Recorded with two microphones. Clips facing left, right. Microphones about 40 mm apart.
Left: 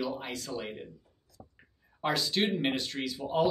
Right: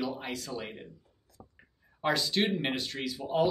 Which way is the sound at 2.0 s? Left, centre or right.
Centre.